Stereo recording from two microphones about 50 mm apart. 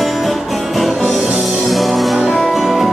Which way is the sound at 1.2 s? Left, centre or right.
Right.